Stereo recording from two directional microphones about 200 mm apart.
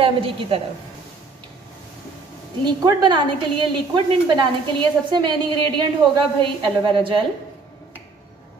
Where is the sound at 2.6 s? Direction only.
20° right (ahead or behind).